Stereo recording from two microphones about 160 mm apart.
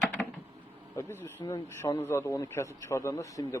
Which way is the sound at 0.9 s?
15° left (ahead or behind).